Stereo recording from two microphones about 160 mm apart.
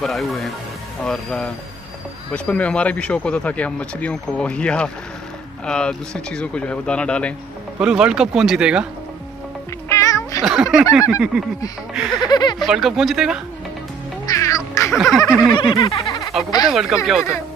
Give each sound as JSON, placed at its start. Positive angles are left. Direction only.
{"t": 0.0, "sound": "speech", "side_deg": 0}
{"t": 7.8, "sound": "speech", "side_deg": -5}
{"t": 9.8, "sound": "music", "side_deg": 20}
{"t": 10.4, "sound": "speech", "side_deg": -5}
{"t": 12.2, "sound": "a sound", "side_deg": 25}
{"t": 12.6, "sound": "speech", "side_deg": 0}
{"t": 14.2, "sound": "music", "side_deg": 20}
{"t": 14.9, "sound": "speech", "side_deg": 0}
{"t": 15.7, "sound": "speech", "side_deg": 30}
{"t": 16.7, "sound": "speech", "side_deg": 0}